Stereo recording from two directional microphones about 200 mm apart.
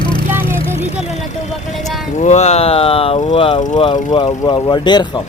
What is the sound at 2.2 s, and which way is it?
Speech, 35° left (ahead or behind).